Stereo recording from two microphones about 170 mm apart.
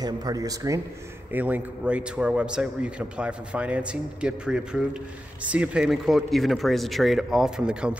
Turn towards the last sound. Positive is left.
turn(degrees=-5)  # may be behind; listen again after turning